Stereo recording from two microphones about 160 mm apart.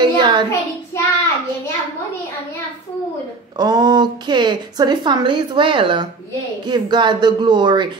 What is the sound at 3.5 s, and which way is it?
Speech, 25° right (ahead or behind).